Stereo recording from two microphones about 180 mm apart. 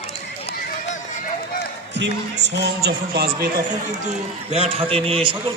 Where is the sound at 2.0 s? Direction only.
75° right (ahead or behind).